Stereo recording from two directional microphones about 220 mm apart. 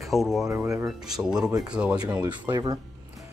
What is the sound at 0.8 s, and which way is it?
Speech, centre (ahead or behind).